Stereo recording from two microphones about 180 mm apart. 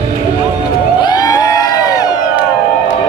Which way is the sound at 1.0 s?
20° left (ahead or behind).